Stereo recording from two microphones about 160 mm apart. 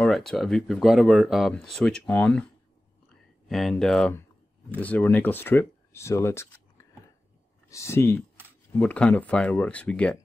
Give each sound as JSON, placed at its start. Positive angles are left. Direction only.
{"t": 0.0, "sound": "speech", "side_deg": 0}
{"t": 3.4, "sound": "speech", "side_deg": 0}